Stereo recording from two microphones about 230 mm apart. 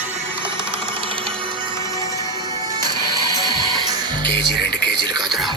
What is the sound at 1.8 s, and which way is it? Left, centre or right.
Music, centre.